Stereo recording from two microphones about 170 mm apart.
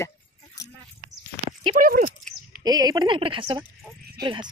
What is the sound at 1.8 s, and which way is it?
Speech, 55° right (ahead or behind).